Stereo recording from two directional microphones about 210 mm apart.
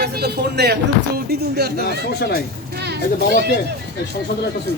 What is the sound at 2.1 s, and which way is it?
Speech, 50° left (ahead or behind).